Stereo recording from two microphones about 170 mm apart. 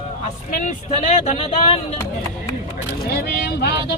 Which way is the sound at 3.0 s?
65° left (ahead or behind).